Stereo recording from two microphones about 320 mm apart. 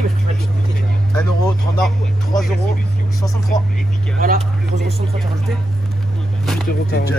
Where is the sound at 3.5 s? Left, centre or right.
Left.